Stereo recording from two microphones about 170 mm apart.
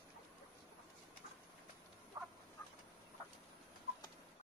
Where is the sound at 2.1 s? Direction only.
20° right (ahead or behind).